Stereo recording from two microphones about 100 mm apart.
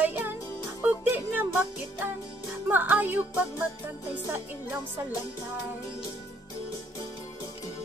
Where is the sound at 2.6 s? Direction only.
20° right (ahead or behind).